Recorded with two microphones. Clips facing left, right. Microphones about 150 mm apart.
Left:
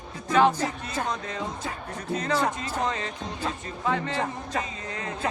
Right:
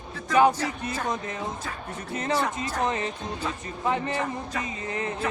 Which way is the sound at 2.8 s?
20° right (ahead or behind).